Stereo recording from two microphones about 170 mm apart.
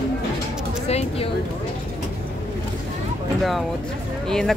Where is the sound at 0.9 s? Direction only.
40° left (ahead or behind).